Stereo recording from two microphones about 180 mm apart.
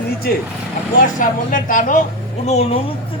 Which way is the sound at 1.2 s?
45° left (ahead or behind).